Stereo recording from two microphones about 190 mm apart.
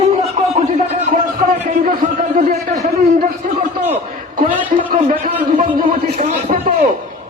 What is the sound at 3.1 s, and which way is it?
Speech, 45° right (ahead or behind).